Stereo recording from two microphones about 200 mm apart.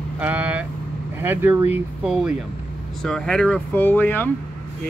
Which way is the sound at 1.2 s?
10° right (ahead or behind).